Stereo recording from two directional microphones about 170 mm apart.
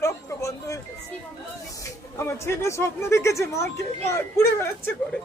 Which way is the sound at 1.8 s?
15° left (ahead or behind).